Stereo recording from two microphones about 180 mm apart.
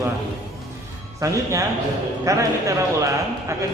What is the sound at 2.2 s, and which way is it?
A man's voice, 15° right (ahead or behind).